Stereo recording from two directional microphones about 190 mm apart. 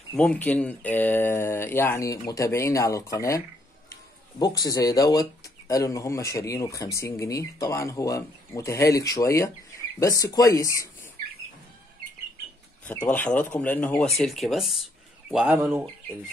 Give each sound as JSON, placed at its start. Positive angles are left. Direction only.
{"t": 0.1, "sound": "speech", "side_deg": 5}
{"t": 12.8, "sound": "speech", "side_deg": 5}